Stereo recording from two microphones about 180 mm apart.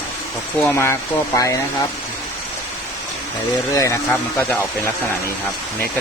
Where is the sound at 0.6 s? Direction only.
10° left (ahead or behind).